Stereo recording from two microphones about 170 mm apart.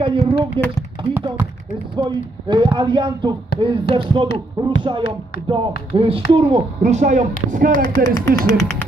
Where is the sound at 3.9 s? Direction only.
70° left (ahead or behind).